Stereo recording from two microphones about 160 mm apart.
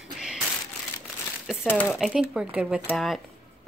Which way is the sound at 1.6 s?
10° left (ahead or behind).